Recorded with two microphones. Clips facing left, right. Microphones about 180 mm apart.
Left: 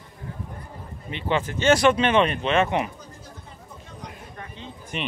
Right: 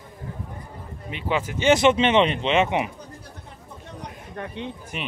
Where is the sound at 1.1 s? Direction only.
5° right (ahead or behind).